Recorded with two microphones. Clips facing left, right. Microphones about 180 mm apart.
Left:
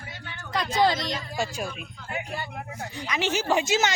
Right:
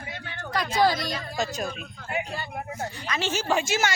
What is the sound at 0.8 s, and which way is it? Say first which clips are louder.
Speech: even; 20° left (ahead or behind).